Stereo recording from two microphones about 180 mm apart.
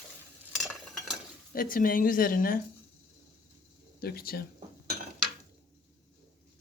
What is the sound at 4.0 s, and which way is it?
Speech, 55° left (ahead or behind).